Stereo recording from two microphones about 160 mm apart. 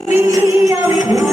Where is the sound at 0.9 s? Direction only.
50° left (ahead or behind).